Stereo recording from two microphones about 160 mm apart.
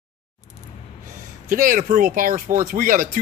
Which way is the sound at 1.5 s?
60° right (ahead or behind).